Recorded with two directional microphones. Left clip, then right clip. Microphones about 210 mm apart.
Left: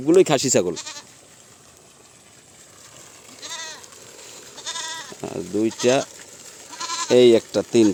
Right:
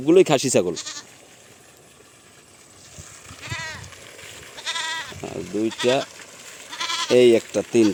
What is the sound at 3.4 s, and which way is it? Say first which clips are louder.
Sheep: right 2 dB; 30° left (ahead or behind).